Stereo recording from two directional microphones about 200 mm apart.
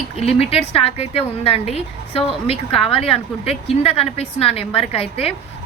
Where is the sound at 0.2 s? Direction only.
30° left (ahead or behind).